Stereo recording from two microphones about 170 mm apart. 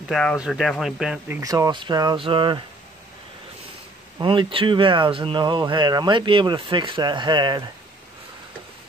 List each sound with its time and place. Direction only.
0.1 s speech: 5° left (ahead or behind)
1.4 s speech: 20° right (ahead or behind)
4.2 s speech: 30° right (ahead or behind)